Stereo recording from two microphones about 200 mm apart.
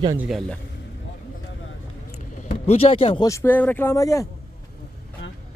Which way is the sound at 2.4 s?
30° left (ahead or behind).